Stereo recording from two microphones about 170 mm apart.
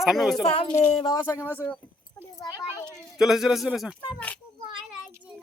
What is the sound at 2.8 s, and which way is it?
Speech, centre (ahead or behind).